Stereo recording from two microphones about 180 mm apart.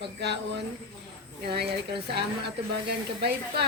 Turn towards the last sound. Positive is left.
turn(degrees=-65)  # may be behind; listen again after turning